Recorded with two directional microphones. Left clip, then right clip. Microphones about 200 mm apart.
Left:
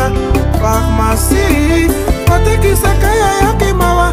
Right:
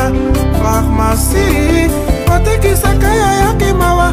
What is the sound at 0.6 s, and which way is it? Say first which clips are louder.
Music: even; centre (ahead or behind).